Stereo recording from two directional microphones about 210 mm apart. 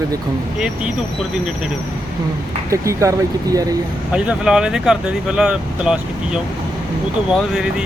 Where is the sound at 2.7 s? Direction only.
15° right (ahead or behind).